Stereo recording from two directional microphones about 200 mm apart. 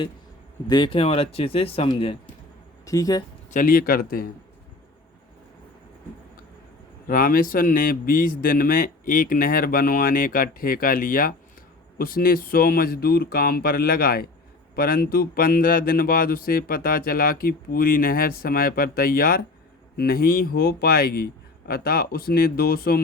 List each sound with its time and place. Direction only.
0.7 s speech: 25° left (ahead or behind)
2.8 s speech: 15° left (ahead or behind)
3.5 s speech: 45° left (ahead or behind)
7.1 s speech: 45° left (ahead or behind)